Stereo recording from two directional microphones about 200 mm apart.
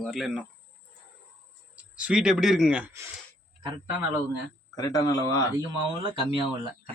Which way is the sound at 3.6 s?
20° right (ahead or behind).